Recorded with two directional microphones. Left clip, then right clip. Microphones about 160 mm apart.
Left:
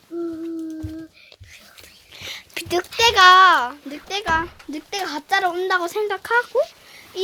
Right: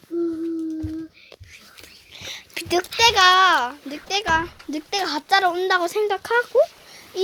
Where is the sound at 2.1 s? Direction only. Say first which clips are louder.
Left 1 dB; 15° left (ahead or behind).